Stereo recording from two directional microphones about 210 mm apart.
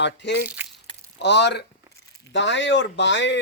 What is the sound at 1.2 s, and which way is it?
Speech, 55° left (ahead or behind).